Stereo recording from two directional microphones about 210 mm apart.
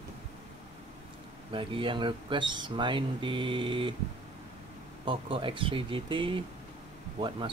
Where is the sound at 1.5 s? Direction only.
25° right (ahead or behind).